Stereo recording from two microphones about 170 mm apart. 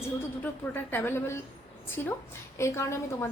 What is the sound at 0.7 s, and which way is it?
A woman's voice, 10° left (ahead or behind).